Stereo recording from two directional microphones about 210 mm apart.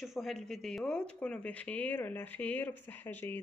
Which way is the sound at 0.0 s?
Centre (ahead or behind).